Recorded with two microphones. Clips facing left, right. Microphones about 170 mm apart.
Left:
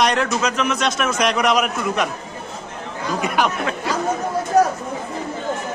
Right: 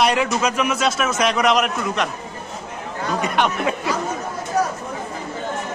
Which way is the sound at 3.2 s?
Centre (ahead or behind).